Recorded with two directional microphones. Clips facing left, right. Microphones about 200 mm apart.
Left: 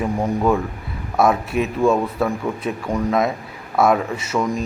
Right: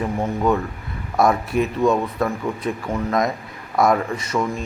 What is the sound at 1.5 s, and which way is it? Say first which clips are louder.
Speech: right 1 dB; 25° left (ahead or behind).